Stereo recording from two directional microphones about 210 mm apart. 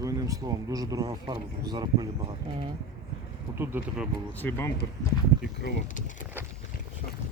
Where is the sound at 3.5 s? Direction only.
10° right (ahead or behind).